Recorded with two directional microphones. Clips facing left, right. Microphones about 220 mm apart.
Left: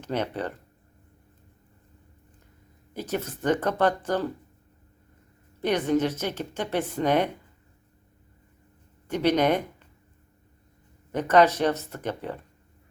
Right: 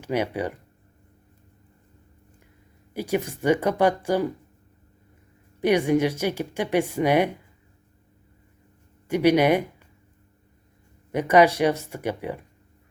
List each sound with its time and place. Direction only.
0.0 s speech: 10° right (ahead or behind)
2.9 s speech: 10° right (ahead or behind)
5.5 s speech: 10° right (ahead or behind)
9.0 s speech: 10° right (ahead or behind)
11.1 s speech: 10° right (ahead or behind)